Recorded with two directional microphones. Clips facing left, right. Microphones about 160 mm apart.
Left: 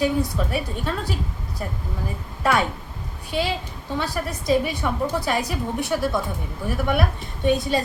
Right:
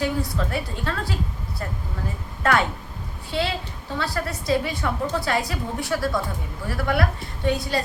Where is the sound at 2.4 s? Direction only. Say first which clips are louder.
Even; 10° left (ahead or behind).